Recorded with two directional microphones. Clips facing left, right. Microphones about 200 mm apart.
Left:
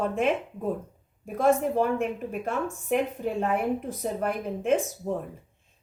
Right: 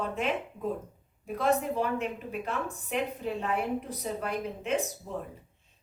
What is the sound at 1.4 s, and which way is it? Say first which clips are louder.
A woman's voice: left 5 dB; 45° left (ahead or behind).